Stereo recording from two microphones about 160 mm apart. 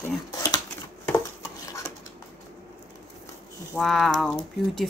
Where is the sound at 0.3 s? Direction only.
25° left (ahead or behind).